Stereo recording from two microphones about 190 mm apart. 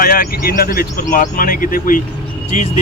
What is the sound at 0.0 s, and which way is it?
A man's voice, 50° left (ahead or behind).